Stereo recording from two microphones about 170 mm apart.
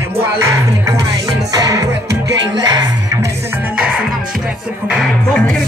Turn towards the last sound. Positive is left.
turn(degrees=0)  # may be behind; listen again after turning